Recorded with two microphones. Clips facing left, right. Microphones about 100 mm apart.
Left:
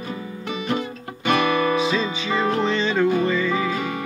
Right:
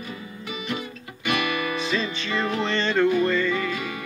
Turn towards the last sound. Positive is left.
turn(degrees=0)  # may be behind; listen again after turning